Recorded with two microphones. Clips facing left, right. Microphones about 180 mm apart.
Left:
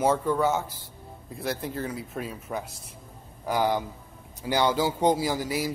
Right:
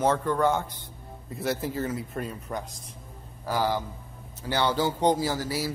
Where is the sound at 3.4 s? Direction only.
15° left (ahead or behind).